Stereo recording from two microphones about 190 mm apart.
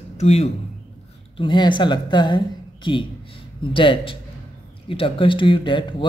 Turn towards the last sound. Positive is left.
turn(degrees=25)  # may be behind; listen again after turning